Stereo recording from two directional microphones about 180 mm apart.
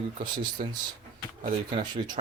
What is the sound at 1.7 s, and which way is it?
Speech, 25° right (ahead or behind).